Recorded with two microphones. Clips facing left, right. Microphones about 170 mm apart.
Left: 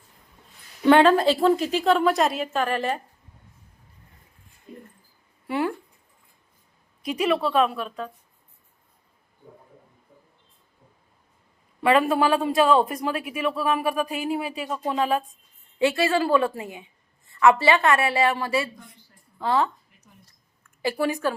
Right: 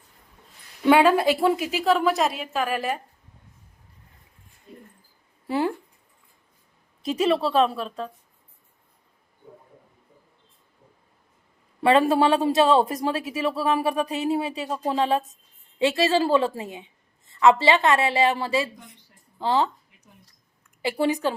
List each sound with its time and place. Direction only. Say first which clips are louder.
0.9 s a woman's voice: left 1 dB; 10° right (ahead or behind)
5.5 s speech: right 1 dB; 30° right (ahead or behind)
7.0 s a woman's voice: right 1 dB; 30° right (ahead or behind)
11.8 s a woman's voice: right 1 dB; 30° right (ahead or behind)